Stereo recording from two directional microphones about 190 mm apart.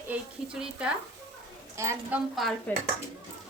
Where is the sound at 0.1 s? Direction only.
5° right (ahead or behind).